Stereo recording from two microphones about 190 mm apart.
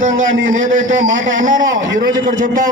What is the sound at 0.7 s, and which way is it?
A man's voice, 40° right (ahead or behind).